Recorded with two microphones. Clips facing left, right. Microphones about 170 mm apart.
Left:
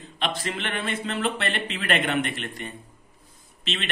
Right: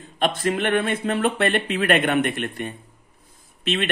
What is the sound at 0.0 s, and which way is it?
A man's voice, 50° right (ahead or behind).